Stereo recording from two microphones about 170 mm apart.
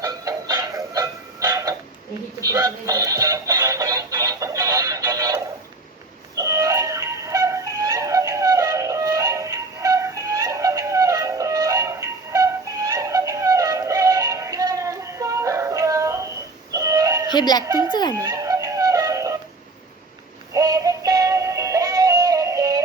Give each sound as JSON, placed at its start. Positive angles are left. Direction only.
{"t": 0.0, "sound": "music", "side_deg": -20}
{"t": 16.7, "sound": "synthetic singing", "side_deg": -20}
{"t": 17.3, "sound": "speech", "side_deg": 25}
{"t": 17.7, "sound": "a child's voice", "side_deg": -20}
{"t": 18.1, "sound": "music", "side_deg": -20}
{"t": 20.5, "sound": "synthetic singing", "side_deg": -20}